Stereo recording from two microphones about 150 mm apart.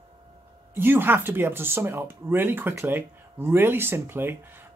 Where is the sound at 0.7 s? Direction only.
15° right (ahead or behind).